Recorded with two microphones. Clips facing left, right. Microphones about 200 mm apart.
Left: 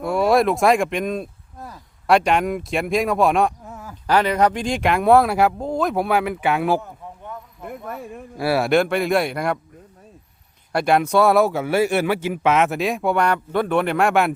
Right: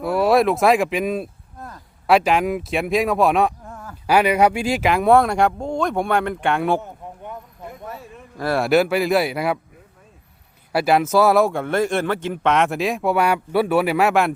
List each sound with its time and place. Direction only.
0.0 s a man's voice: centre (ahead or behind)
4.0 s a man's voice: 10° right (ahead or behind)
7.7 s speech: 55° left (ahead or behind)
8.4 s a man's voice: 5° left (ahead or behind)
10.7 s a man's voice: 5° right (ahead or behind)